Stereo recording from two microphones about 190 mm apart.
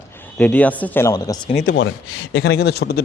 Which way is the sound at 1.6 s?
70° left (ahead or behind).